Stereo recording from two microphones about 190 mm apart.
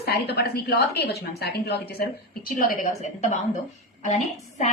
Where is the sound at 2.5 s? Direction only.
45° left (ahead or behind).